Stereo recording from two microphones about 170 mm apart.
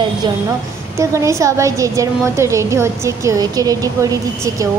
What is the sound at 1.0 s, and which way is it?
A woman's voice, 15° right (ahead or behind).